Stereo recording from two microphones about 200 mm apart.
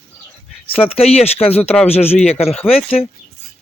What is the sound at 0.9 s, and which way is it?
Speech, 30° left (ahead or behind).